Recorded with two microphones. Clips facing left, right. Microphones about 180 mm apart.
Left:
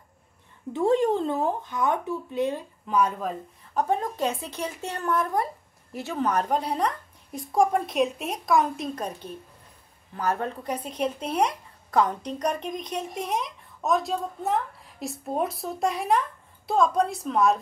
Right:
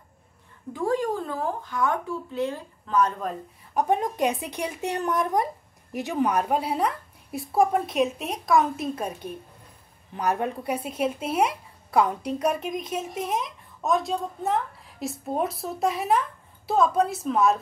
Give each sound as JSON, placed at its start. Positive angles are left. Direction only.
{"t": 0.7, "sound": "speech", "side_deg": 25}
{"t": 3.7, "sound": "speech", "side_deg": -15}